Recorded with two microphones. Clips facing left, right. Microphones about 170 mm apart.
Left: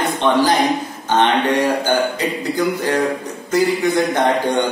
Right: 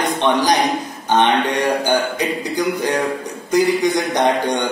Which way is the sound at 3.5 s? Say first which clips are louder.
Right 1 dB; 15° right (ahead or behind).